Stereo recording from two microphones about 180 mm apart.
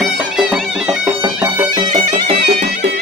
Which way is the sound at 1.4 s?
15° right (ahead or behind).